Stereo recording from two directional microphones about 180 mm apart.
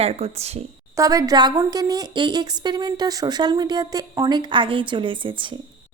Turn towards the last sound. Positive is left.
turn(degrees=-30)  # may be behind; listen again after turning